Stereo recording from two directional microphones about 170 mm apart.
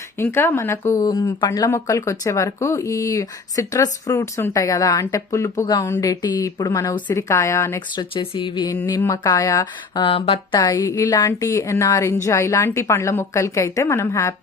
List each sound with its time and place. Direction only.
0.2 s speech: 15° left (ahead or behind)
8.1 s speech: 30° left (ahead or behind)
10.0 s speech: 30° left (ahead or behind); by 14.3 s 15° left (ahead or behind)